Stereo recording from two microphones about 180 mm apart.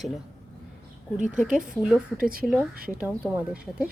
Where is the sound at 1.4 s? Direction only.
45° right (ahead or behind).